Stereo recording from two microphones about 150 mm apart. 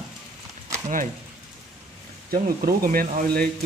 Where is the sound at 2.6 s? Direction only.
75° right (ahead or behind).